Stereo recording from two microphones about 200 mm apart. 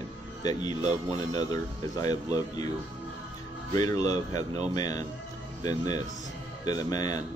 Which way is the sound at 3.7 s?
15° left (ahead or behind).